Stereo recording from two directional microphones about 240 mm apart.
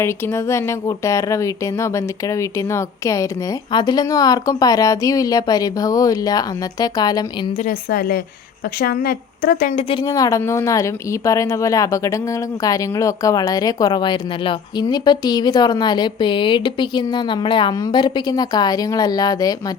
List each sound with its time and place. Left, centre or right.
0.0 s speech: centre
7.6 s a woman's voice: left
9.9 s speech: centre